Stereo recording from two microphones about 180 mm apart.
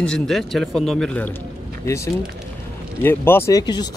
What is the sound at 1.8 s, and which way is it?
Speech, 15° left (ahead or behind).